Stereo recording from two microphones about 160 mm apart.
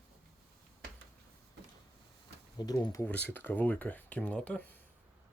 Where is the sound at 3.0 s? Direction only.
10° left (ahead or behind).